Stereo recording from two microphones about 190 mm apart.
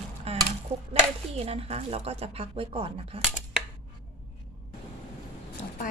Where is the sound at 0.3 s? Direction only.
30° right (ahead or behind).